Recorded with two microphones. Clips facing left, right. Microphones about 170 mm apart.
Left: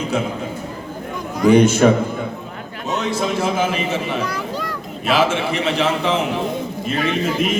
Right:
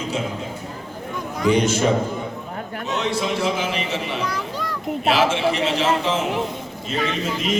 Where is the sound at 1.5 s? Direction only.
55° left (ahead or behind).